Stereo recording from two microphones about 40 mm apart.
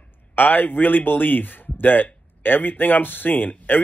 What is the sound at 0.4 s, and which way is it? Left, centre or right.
Speech, left.